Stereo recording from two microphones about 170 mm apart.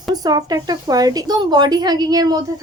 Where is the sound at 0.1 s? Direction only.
20° right (ahead or behind).